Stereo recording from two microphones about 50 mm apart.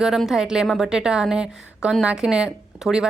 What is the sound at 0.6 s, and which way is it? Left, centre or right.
Speech, centre.